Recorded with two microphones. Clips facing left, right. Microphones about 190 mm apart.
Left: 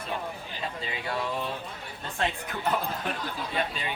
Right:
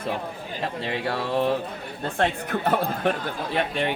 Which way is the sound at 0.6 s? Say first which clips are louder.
Right 7 dB; 65° right (ahead or behind).